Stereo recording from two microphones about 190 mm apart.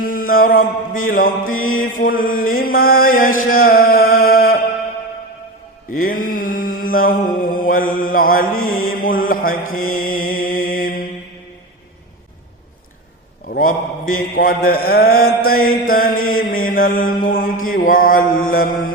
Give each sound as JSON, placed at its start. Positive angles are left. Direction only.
{"t": 0.0, "sound": "mantra", "side_deg": 50}
{"t": 1.5, "sound": "mantra", "side_deg": 90}
{"t": 1.8, "sound": "mantra", "side_deg": 45}
{"t": 5.9, "sound": "mantra", "side_deg": 45}
{"t": 8.5, "sound": "mantra", "side_deg": 90}
{"t": 8.9, "sound": "mantra", "side_deg": 50}
{"t": 9.6, "sound": "mantra", "side_deg": 90}
{"t": 9.9, "sound": "mantra", "side_deg": 50}
{"t": 13.5, "sound": "a man's voice", "side_deg": 50}
{"t": 14.2, "sound": "mantra", "side_deg": 50}